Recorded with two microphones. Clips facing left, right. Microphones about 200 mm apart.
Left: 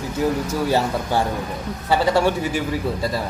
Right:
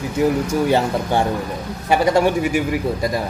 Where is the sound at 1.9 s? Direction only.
15° right (ahead or behind).